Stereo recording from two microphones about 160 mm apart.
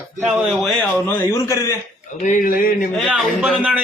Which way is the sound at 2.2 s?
55° left (ahead or behind).